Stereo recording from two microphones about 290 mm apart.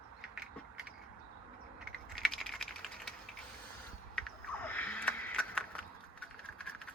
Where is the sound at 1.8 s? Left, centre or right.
Centre.